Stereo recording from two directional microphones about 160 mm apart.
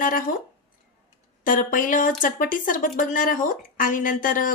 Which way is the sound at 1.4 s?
55° left (ahead or behind).